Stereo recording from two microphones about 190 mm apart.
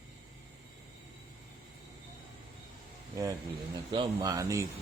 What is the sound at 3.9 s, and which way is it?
Speech, 20° right (ahead or behind).